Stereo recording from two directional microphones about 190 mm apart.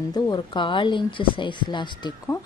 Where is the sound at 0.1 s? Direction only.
25° left (ahead or behind).